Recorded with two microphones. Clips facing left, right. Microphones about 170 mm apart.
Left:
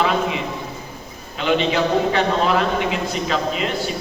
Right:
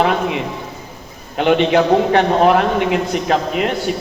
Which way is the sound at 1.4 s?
60° right (ahead or behind).